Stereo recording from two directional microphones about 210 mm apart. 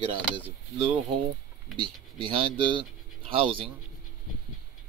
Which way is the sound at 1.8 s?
25° right (ahead or behind).